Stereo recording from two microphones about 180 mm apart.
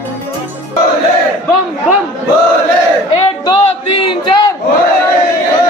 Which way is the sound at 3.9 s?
25° left (ahead or behind).